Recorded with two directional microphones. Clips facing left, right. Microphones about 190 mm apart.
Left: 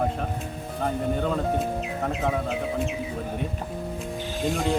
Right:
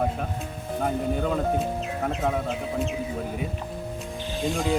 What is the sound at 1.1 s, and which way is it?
Speech, 5° right (ahead or behind).